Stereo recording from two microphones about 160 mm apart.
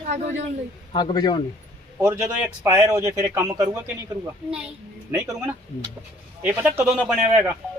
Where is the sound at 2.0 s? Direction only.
15° right (ahead or behind).